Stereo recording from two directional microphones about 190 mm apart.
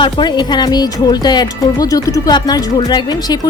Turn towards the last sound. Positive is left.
turn(degrees=20)  # may be behind; listen again after turning